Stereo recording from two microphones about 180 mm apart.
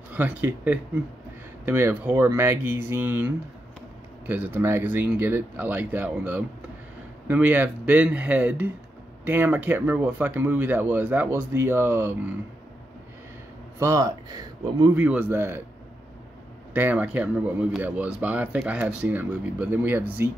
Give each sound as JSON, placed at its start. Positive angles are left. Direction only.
{"t": 0.1, "sound": "speech", "side_deg": -10}
{"t": 13.7, "sound": "speech", "side_deg": -15}
{"t": 15.0, "sound": "speech", "side_deg": -10}
{"t": 16.7, "sound": "speech", "side_deg": -10}